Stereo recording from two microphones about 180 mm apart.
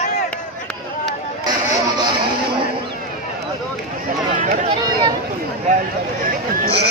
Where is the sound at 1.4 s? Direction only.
20° right (ahead or behind).